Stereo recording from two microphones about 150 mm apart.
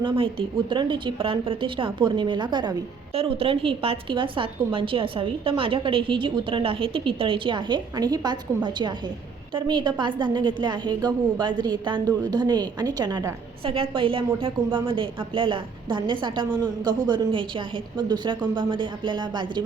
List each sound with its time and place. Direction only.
0.2 s a woman's voice: 35° right (ahead or behind)
3.2 s a woman's voice: 40° right (ahead or behind)